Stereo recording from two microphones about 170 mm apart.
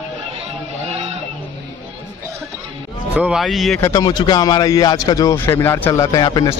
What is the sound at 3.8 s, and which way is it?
Speech, 20° left (ahead or behind).